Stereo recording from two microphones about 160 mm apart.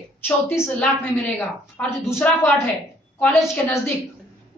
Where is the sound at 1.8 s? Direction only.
15° left (ahead or behind).